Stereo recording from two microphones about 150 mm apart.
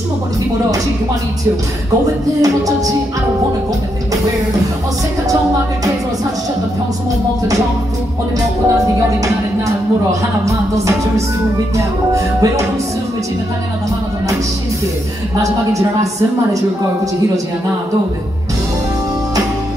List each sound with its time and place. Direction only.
2.4 s music: 25° right (ahead or behind)
8.7 s music: 20° right (ahead or behind)
15.4 s music: 20° right (ahead or behind)